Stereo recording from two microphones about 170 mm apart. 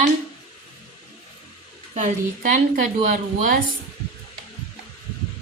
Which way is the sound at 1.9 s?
50° right (ahead or behind).